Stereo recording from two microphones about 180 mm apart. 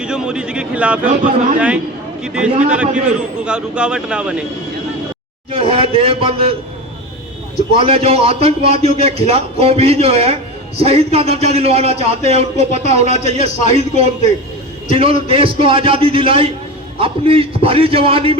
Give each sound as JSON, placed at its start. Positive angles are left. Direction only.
{"t": 0.0, "sound": "a man's voice", "side_deg": -5}
{"t": 5.5, "sound": "a man's voice", "side_deg": -30}
{"t": 7.8, "sound": "a man's voice", "side_deg": -35}